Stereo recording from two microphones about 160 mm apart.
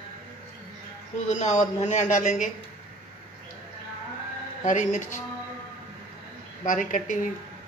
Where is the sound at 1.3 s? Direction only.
45° left (ahead or behind).